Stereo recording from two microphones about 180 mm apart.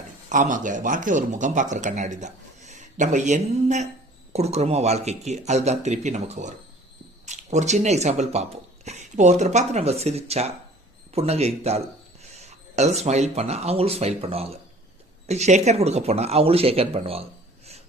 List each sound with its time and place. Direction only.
0.3 s speech: 45° right (ahead or behind)